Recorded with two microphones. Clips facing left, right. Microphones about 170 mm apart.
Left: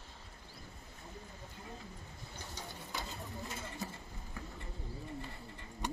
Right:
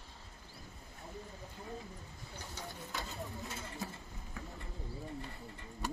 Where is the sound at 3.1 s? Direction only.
Centre (ahead or behind).